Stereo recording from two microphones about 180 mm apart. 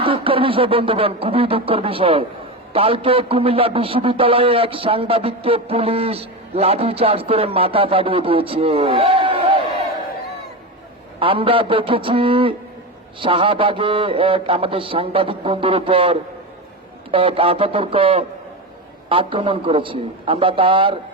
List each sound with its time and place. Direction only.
0.0 s a man's voice: 30° right (ahead or behind)
11.2 s a man's voice: 30° right (ahead or behind)